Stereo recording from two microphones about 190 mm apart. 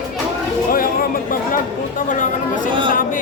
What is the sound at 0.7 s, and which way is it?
Speech, 50° left (ahead or behind).